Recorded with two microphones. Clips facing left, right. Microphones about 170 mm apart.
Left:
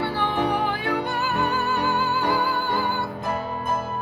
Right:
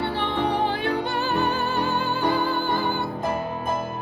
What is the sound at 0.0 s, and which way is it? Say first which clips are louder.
Music: left 1 dB; 25° right (ahead or behind).